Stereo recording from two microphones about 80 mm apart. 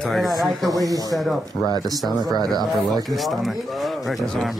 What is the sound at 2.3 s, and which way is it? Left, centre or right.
Speech, right.